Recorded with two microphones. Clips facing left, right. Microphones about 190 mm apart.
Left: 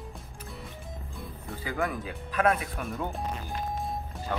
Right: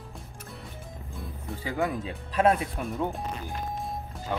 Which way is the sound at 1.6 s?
25° right (ahead or behind).